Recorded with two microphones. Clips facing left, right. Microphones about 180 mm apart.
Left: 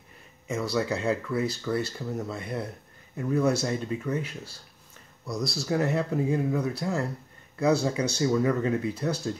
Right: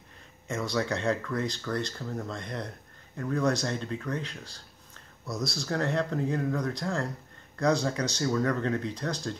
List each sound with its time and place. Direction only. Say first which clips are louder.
0.5 s speech: left 2 dB; 5° left (ahead or behind)